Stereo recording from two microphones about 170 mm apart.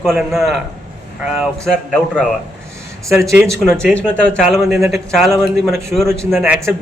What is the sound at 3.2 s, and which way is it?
Speech, 15° right (ahead or behind).